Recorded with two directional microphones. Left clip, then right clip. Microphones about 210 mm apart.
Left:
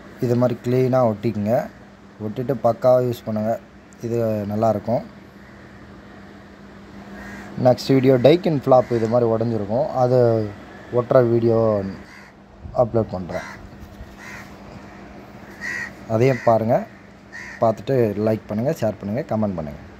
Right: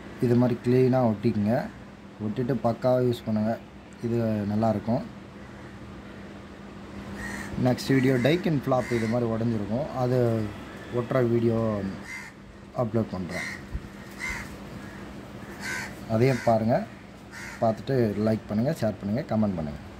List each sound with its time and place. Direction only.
0.2 s speech: 15° left (ahead or behind)
7.6 s speech: 20° left (ahead or behind)
16.1 s speech: 15° left (ahead or behind)